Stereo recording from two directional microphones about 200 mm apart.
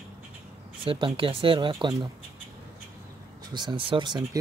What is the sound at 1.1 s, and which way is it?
Speech, 25° right (ahead or behind).